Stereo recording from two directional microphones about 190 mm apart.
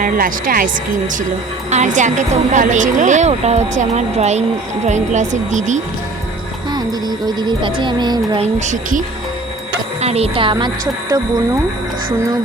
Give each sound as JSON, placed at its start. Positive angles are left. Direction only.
{"t": 0.0, "sound": "a woman's voice", "side_deg": -45}
{"t": 6.7, "sound": "speech", "side_deg": -20}
{"t": 8.5, "sound": "a woman's voice", "side_deg": -40}